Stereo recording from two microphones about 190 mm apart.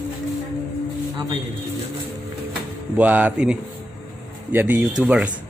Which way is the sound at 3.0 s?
10° right (ahead or behind).